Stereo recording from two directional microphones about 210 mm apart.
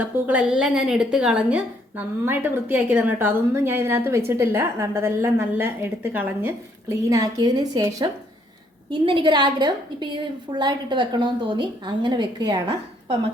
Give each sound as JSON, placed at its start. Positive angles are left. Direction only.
{"t": 0.0, "sound": "a woman's voice", "side_deg": -5}